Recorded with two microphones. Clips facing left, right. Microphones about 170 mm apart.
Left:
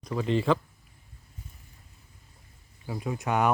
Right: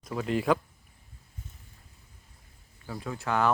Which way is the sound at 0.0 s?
5° right (ahead or behind).